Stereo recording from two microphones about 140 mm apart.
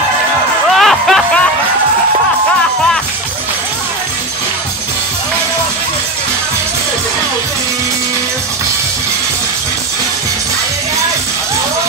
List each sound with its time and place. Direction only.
0.7 s music: centre (ahead or behind)